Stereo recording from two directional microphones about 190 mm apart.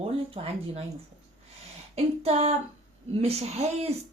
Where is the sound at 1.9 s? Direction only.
30° right (ahead or behind).